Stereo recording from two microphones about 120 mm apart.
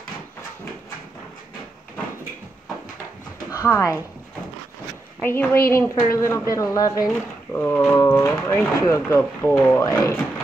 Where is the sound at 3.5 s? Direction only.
25° left (ahead or behind).